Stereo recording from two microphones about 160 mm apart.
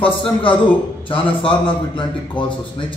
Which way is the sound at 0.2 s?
30° left (ahead or behind).